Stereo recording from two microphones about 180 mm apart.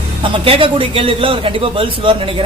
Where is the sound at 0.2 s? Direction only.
30° right (ahead or behind).